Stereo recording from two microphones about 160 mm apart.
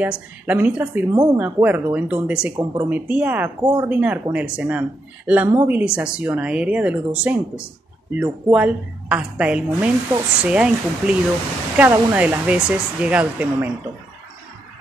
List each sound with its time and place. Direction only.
0.0 s speech: 10° right (ahead or behind)
1.1 s speech: 25° right (ahead or behind)
1.4 s speech: 10° right (ahead or behind)
2.6 s speech: 25° right (ahead or behind)
2.9 s speech: 10° right (ahead or behind)
3.9 s speech: 10° right (ahead or behind)